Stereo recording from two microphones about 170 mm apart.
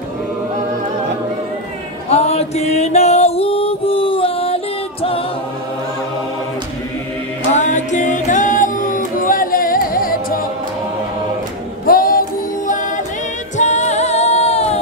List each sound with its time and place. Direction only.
2.0 s music: 40° left (ahead or behind)
7.5 s singing: 45° left (ahead or behind)
11.8 s singing: 55° left (ahead or behind)
13.6 s music: 45° left (ahead or behind)